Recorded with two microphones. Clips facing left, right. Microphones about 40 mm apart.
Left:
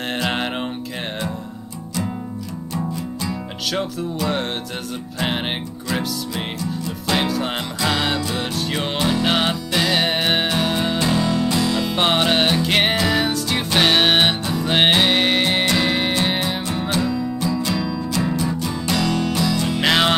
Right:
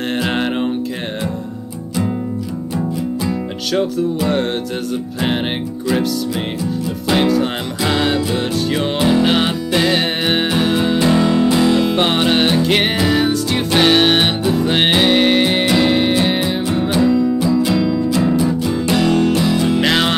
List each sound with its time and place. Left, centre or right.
0.2 s music: centre
4.2 s music: centre
5.9 s music: centre
11.0 s music: centre
11.9 s music: centre
19.8 s music: centre